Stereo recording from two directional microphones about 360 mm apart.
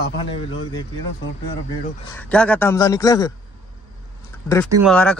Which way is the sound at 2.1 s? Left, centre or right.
Centre.